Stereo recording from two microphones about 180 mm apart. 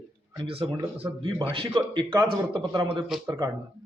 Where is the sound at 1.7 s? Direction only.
20° right (ahead or behind).